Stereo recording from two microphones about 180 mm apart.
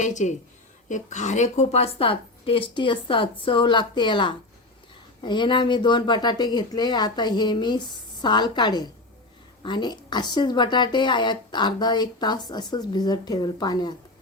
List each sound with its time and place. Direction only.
0.0 s a woman's voice: 45° left (ahead or behind); by 13.9 s 25° left (ahead or behind)